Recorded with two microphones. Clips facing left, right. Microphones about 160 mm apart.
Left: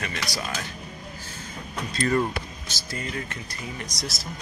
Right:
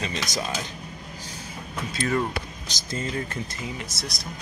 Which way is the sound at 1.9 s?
Centre (ahead or behind).